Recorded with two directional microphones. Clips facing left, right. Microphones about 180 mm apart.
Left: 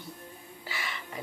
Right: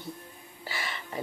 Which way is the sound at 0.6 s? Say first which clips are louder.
Right 2 dB; 35° right (ahead or behind).